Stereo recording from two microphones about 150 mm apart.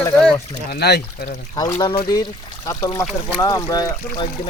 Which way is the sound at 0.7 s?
90° left.